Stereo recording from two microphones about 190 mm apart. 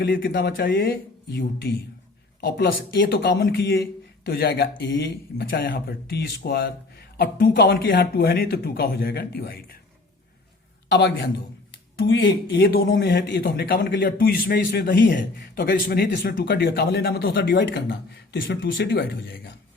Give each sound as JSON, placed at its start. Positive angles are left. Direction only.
{"t": 0.1, "sound": "a man's voice", "side_deg": 50}
{"t": 3.0, "sound": "a man's voice", "side_deg": 55}
{"t": 10.8, "sound": "a man's voice", "side_deg": 65}
{"t": 12.5, "sound": "a man's voice", "side_deg": 55}